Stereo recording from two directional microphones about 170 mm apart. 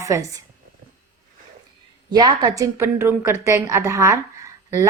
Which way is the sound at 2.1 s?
25° right (ahead or behind).